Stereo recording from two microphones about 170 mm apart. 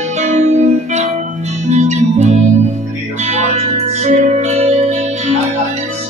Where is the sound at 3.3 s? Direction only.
45° right (ahead or behind).